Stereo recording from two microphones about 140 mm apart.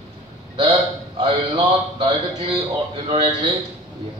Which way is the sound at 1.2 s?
35° right (ahead or behind).